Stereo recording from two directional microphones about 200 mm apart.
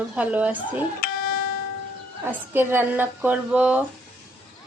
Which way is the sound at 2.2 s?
10° right (ahead or behind).